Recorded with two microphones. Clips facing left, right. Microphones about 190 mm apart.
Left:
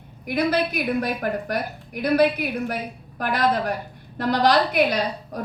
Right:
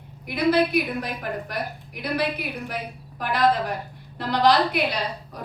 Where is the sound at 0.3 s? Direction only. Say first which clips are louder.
Right 1 dB; 45° left (ahead or behind).